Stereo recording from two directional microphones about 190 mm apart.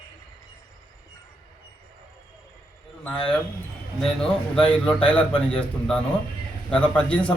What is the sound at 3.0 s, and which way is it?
Speech, 5° left (ahead or behind).